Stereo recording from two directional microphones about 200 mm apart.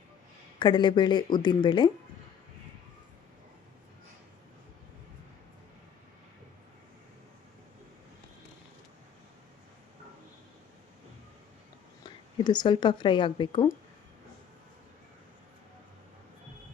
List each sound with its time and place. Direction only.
0.6 s speech: 25° left (ahead or behind)
12.0 s speech: 20° left (ahead or behind)